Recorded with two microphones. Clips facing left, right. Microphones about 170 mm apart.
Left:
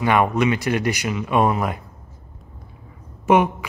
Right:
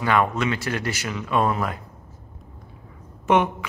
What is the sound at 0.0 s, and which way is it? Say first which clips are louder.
Speech: left 3 dB; 15° left (ahead or behind).